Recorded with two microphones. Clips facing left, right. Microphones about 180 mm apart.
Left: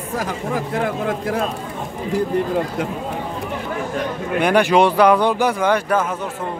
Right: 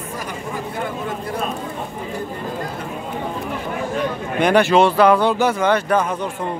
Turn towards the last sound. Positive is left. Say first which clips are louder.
# right 1 dB
turn(degrees=10)  # may be behind; listen again after turning